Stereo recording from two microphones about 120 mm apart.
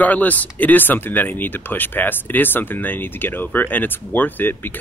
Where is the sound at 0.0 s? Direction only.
15° left (ahead or behind).